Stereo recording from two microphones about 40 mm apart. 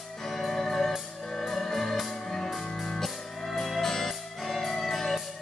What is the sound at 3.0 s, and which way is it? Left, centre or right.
Music, centre.